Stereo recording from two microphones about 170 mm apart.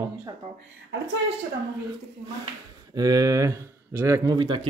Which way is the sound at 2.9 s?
20° right (ahead or behind).